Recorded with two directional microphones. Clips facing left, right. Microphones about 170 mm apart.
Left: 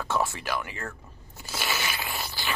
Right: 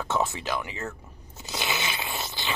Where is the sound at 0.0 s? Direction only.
20° right (ahead or behind).